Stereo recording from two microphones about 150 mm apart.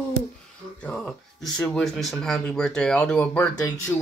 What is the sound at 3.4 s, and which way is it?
Speech, 20° left (ahead or behind).